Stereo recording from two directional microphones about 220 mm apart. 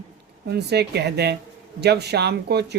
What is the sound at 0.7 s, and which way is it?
Speech, 50° right (ahead or behind).